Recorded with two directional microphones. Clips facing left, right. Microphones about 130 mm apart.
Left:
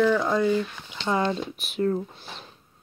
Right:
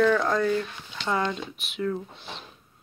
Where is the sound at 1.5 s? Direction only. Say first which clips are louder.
Left 4 dB; 40° left (ahead or behind).